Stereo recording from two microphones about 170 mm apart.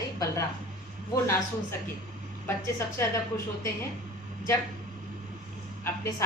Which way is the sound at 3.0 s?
20° left (ahead or behind).